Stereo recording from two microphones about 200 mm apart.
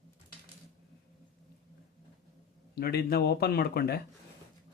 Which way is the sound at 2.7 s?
50° left (ahead or behind).